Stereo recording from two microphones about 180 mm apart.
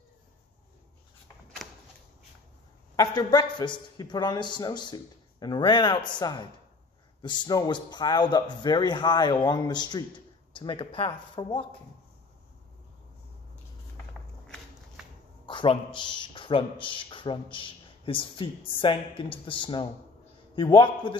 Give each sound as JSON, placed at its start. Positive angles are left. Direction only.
{"t": 1.6, "sound": "a sound", "side_deg": 0}
{"t": 3.0, "sound": "speech", "side_deg": 20}
{"t": 15.4, "sound": "speech", "side_deg": 30}